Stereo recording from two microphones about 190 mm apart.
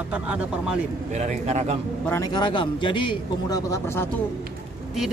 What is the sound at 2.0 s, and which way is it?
A man's voice, 15° left (ahead or behind).